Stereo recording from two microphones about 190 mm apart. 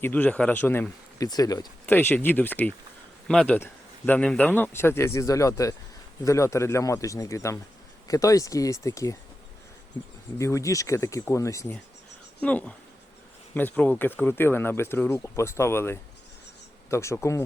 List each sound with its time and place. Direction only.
0.0 s speech: 10° left (ahead or behind)
10.3 s speech: 15° left (ahead or behind)